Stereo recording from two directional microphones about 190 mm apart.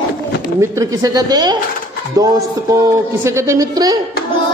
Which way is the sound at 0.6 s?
15° right (ahead or behind).